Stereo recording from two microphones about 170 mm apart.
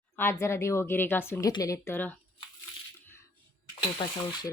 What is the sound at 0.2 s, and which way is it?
Speech, 15° left (ahead or behind).